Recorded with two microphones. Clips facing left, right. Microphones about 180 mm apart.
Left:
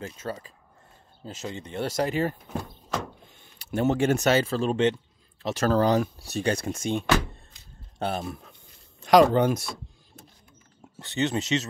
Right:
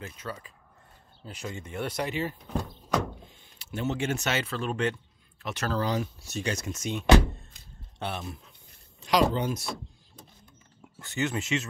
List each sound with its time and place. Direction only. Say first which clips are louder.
0.0 s speech: left 5 dB; 40° left (ahead or behind)
1.3 s speech: left 2 dB; 25° left (ahead or behind)
1.6 s speech: left 5 dB; 35° left (ahead or behind)
3.3 s speech: left 9 dB; 50° left (ahead or behind); by 4.9 s 25° left (ahead or behind)
5.6 s speech: left 8 dB; 45° left (ahead or behind)
6.1 s speech: left 6 dB; 35° left (ahead or behind)
8.0 s speech: left 5 dB; 40° left (ahead or behind)
10.8 s speech: left 3 dB; 35° left (ahead or behind)